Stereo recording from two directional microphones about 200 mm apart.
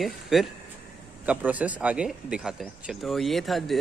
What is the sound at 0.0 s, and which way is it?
Speech, centre (ahead or behind).